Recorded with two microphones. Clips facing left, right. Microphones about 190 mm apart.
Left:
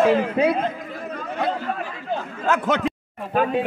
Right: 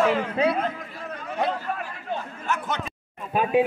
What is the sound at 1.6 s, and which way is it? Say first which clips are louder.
A man's voice: left 3 dB; 90° left.